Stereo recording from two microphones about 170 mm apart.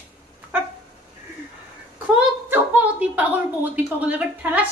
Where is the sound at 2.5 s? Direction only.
10° right (ahead or behind).